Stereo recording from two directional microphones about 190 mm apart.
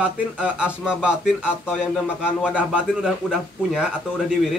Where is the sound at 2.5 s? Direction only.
5° right (ahead or behind).